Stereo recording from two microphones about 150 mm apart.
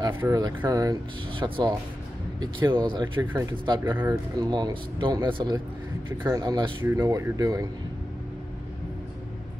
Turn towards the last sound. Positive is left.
turn(degrees=-20)  # may be behind; listen again after turning